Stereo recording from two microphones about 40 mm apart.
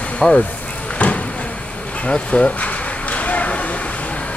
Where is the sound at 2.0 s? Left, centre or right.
Left.